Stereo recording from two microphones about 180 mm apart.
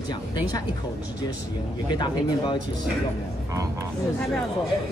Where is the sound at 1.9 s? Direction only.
25° left (ahead or behind).